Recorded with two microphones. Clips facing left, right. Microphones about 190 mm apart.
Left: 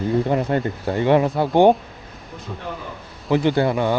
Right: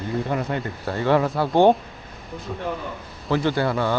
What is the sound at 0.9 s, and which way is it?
Cattle, 20° left (ahead or behind).